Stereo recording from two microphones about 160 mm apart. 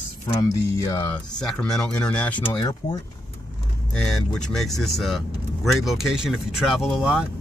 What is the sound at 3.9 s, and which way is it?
Speech, 5° left (ahead or behind).